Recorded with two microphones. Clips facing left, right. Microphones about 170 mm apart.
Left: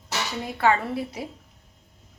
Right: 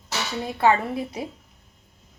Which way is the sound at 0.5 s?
20° right (ahead or behind).